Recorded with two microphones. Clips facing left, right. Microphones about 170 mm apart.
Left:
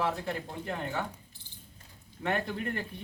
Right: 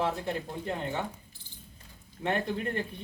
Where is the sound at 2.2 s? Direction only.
20° right (ahead or behind).